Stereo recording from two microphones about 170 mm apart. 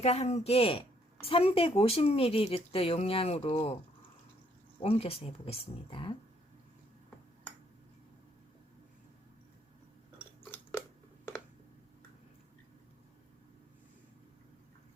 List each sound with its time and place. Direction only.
0.0 s a woman's voice: 40° left (ahead or behind)
4.8 s a woman's voice: 35° left (ahead or behind)